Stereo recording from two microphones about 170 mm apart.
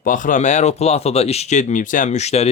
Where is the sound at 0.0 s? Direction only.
50° left (ahead or behind).